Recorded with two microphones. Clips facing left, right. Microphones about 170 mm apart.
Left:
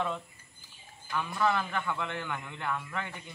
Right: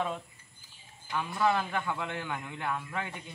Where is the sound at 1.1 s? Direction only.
15° right (ahead or behind).